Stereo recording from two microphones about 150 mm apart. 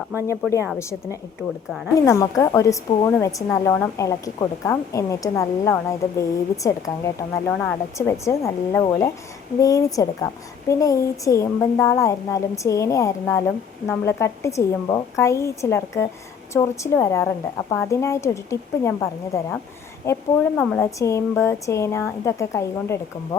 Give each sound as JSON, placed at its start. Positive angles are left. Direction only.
{"t": 0.8, "sound": "a woman's voice", "side_deg": 20}